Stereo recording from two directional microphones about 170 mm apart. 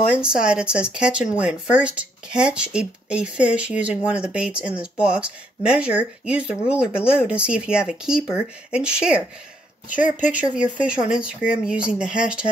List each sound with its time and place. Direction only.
0.2 s speech: 5° right (ahead or behind)
10.2 s speech: 5° right (ahead or behind)